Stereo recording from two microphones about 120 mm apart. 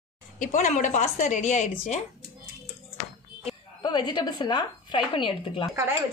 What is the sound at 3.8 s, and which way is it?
Speech, 40° left (ahead or behind).